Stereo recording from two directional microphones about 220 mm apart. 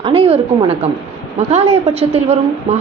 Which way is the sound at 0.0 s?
25° right (ahead or behind).